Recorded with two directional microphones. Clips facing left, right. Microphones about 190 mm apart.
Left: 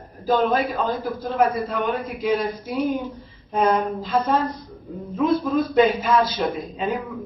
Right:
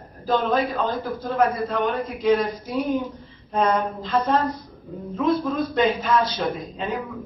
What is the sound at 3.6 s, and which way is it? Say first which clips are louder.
A man's voice: left 3 dB; 5° left (ahead or behind).